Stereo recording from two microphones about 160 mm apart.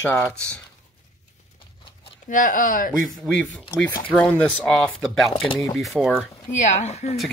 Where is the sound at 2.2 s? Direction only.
55° left (ahead or behind).